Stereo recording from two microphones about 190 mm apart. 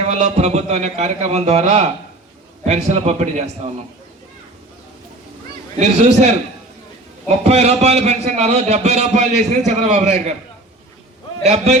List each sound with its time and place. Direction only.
0.1 s a man's voice: 35° right (ahead or behind)
5.7 s a man's voice: 40° right (ahead or behind)
7.3 s a man's voice: 35° right (ahead or behind)
11.4 s a man's voice: 35° right (ahead or behind)